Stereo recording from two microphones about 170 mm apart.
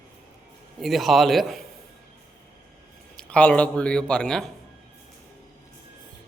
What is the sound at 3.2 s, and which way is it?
A man's voice, 5° left (ahead or behind).